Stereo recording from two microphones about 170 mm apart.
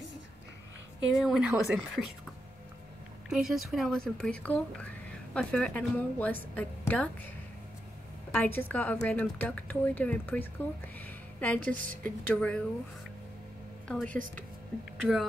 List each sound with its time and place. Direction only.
1.1 s speech: centre (ahead or behind)
3.3 s speech: centre (ahead or behind)
8.3 s speech: 10° left (ahead or behind)
11.7 s a woman's voice: 55° right (ahead or behind)
12.0 s speech: 10° left (ahead or behind)
13.8 s speech: 5° left (ahead or behind)